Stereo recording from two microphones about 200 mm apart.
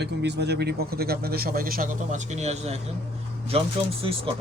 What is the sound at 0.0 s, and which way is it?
A man's voice, 55° right (ahead or behind).